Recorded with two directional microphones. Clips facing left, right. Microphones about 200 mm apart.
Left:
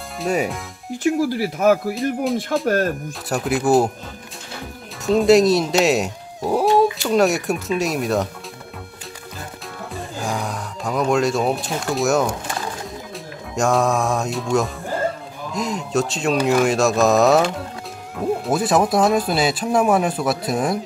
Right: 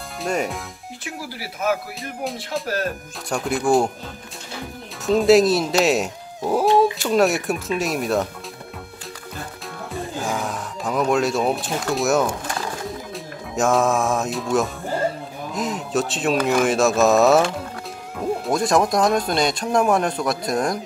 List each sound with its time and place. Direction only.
0.2 s speech: 5° left (ahead or behind)
1.3 s speech: 45° left (ahead or behind)
3.3 s speech: 5° left (ahead or behind)
5.0 s speech: centre (ahead or behind)
10.1 s speech: centre (ahead or behind)
13.6 s speech: centre (ahead or behind)